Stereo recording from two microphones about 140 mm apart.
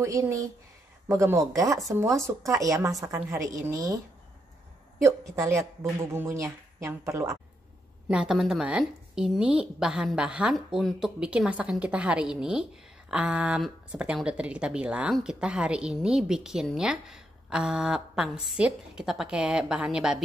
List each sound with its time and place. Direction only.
0.0 s speech: 20° right (ahead or behind)
5.0 s speech: 20° right (ahead or behind)
8.1 s a woman's voice: 5° right (ahead or behind)